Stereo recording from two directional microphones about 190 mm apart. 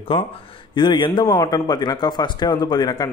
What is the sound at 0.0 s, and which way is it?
Speech, 30° left (ahead or behind).